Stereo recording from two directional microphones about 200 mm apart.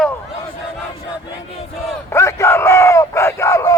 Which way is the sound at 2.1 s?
15° left (ahead or behind).